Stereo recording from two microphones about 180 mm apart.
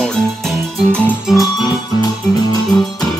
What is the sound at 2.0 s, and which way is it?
Music, 20° left (ahead or behind).